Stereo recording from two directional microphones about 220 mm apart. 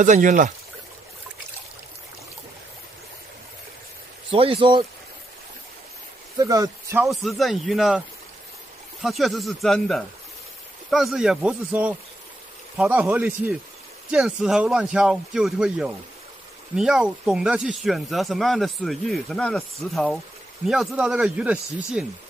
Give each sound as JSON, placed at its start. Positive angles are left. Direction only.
{"t": 0.0, "sound": "speech", "side_deg": -35}
{"t": 4.3, "sound": "speech", "side_deg": -25}
{"t": 6.3, "sound": "speech", "side_deg": -15}
{"t": 7.1, "sound": "speech", "side_deg": 0}
{"t": 9.0, "sound": "speech", "side_deg": 0}